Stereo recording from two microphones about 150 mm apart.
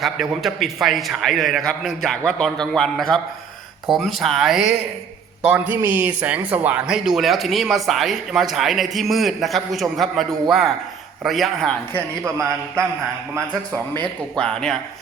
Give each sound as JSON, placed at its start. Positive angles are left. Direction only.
{"t": 0.0, "sound": "a man's voice", "side_deg": 0}
{"t": 5.5, "sound": "a man's voice", "side_deg": -15}
{"t": 12.2, "sound": "a man's voice", "side_deg": -20}
{"t": 14.0, "sound": "a man's voice", "side_deg": 5}